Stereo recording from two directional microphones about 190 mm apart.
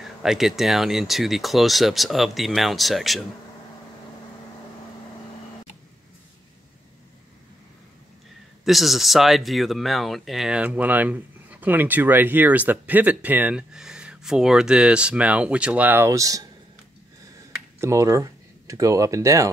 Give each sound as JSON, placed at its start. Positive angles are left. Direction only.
{"t": 0.0, "sound": "speech", "side_deg": 0}
{"t": 8.6, "sound": "speech", "side_deg": 0}
{"t": 17.7, "sound": "speech", "side_deg": -15}